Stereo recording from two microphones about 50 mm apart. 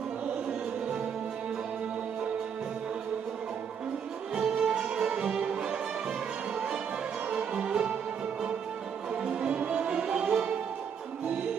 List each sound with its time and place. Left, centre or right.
4.4 s music: centre
7.2 s music: right
9.1 s music: centre